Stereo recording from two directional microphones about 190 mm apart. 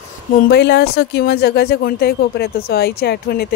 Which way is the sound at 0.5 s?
60° left (ahead or behind).